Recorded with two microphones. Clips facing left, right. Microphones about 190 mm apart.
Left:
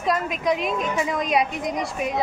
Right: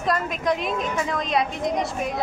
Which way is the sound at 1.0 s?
10° left (ahead or behind).